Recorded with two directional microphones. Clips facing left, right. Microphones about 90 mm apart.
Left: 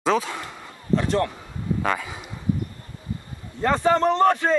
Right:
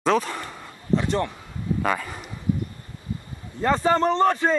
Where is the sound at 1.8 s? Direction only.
Centre (ahead or behind).